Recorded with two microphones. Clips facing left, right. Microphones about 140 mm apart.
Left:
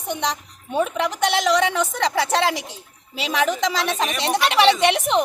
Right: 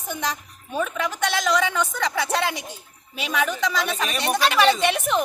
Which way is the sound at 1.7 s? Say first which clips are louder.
Left 3 dB; 30° left (ahead or behind).